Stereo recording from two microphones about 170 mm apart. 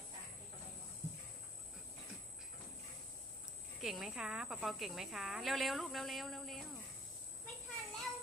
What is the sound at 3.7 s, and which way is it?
A woman's voice, centre (ahead or behind).